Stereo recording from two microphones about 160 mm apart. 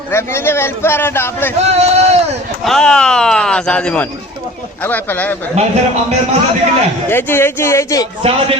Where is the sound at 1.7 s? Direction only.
40° right (ahead or behind).